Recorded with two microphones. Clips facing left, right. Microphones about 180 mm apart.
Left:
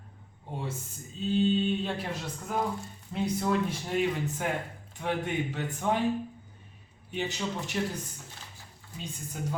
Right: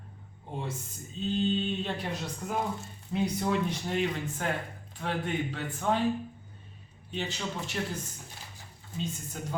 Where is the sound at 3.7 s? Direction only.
10° left (ahead or behind).